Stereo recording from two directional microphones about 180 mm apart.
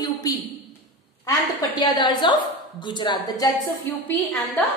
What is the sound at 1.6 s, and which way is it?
A woman's voice, 20° left (ahead or behind).